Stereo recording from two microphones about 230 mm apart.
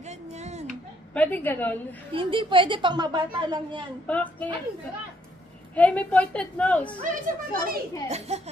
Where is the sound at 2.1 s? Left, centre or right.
Right.